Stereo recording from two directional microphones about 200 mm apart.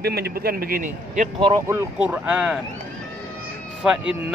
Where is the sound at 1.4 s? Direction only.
20° right (ahead or behind).